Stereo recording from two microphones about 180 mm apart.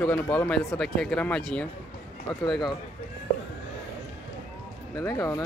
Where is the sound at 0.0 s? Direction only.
10° left (ahead or behind).